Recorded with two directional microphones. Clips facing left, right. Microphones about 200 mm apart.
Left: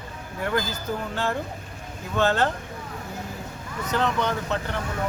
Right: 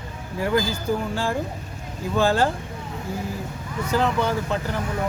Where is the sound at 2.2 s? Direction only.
10° right (ahead or behind).